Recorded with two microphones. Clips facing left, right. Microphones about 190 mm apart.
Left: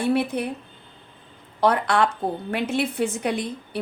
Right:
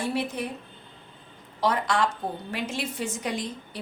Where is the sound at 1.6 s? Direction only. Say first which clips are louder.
Left 5 dB; 60° left (ahead or behind).